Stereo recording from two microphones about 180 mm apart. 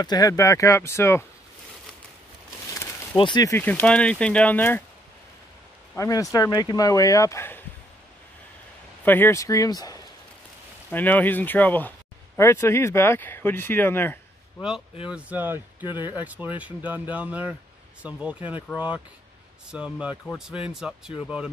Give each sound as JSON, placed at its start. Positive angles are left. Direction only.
{"t": 0.0, "sound": "speech", "side_deg": 20}
{"t": 3.2, "sound": "speech", "side_deg": 25}
{"t": 3.5, "sound": "speech", "side_deg": 10}
{"t": 5.9, "sound": "speech", "side_deg": 20}
{"t": 9.0, "sound": "speech", "side_deg": 10}
{"t": 10.9, "sound": "speech", "side_deg": 10}
{"t": 15.0, "sound": "speech", "side_deg": -5}